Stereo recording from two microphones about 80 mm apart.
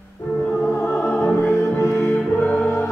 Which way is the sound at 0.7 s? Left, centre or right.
Left.